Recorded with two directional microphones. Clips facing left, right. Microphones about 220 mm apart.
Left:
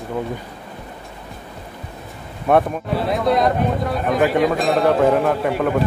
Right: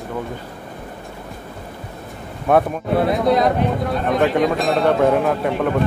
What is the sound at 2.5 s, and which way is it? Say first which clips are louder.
Speech: even; centre (ahead or behind).